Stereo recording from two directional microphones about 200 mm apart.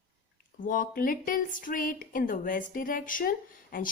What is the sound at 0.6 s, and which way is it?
Speech, 40° left (ahead or behind).